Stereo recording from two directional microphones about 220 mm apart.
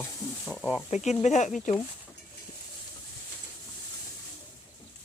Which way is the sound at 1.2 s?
30° left (ahead or behind).